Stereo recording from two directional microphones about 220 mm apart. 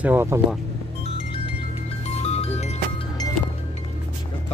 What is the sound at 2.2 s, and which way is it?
Music, 30° left (ahead or behind).